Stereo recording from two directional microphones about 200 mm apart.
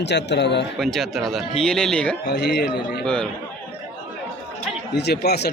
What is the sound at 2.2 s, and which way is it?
Speech, 55° left (ahead or behind).